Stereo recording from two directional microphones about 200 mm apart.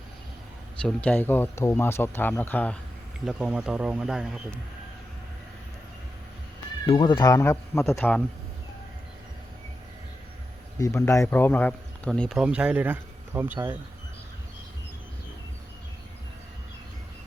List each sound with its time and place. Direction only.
0.8 s speech: 5° left (ahead or behind)
6.8 s speech: 25° left (ahead or behind); by 8.2 s 5° left (ahead or behind)
10.8 s speech: 15° left (ahead or behind); by 13.7 s 10° right (ahead or behind)